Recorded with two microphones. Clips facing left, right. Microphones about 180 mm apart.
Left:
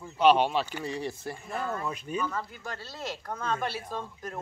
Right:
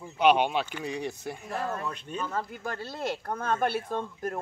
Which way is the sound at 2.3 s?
55° right (ahead or behind).